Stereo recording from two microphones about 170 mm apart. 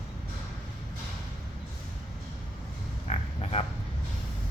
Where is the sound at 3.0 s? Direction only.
35° left (ahead or behind).